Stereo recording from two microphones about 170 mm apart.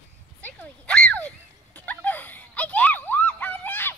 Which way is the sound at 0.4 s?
5° left (ahead or behind).